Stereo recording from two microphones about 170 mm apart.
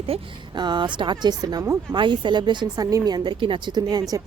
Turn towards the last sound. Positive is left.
turn(degrees=-20)  # may be behind; listen again after turning